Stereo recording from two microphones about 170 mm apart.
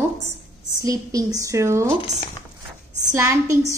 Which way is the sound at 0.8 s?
20° right (ahead or behind).